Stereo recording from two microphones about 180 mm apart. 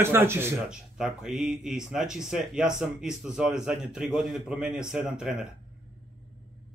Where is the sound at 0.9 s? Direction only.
Centre (ahead or behind).